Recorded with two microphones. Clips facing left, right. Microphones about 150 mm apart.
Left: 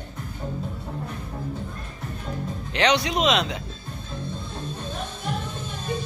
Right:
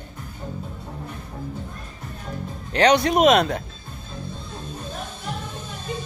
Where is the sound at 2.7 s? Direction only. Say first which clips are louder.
Right 5 dB; 45° right (ahead or behind).